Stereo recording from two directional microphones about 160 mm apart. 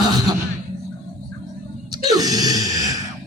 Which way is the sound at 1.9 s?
25° right (ahead or behind).